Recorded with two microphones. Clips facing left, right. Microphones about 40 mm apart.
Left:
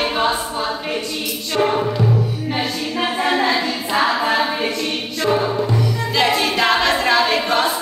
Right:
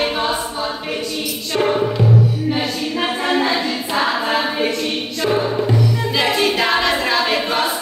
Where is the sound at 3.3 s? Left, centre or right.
Centre.